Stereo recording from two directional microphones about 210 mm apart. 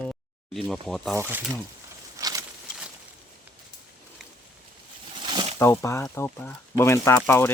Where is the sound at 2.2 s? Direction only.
15° right (ahead or behind).